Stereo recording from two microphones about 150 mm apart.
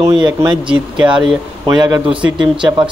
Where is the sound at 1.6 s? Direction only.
30° right (ahead or behind).